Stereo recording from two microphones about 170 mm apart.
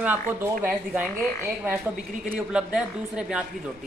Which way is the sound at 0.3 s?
10° right (ahead or behind).